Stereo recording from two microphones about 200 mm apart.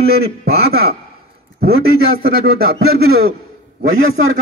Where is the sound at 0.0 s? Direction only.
50° right (ahead or behind).